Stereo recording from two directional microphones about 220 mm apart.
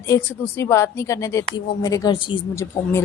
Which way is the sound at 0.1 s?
10° left (ahead or behind).